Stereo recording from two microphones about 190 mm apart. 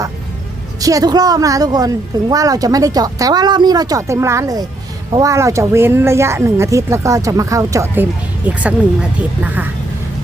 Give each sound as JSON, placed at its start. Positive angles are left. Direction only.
{"t": 0.8, "sound": "speech", "side_deg": -20}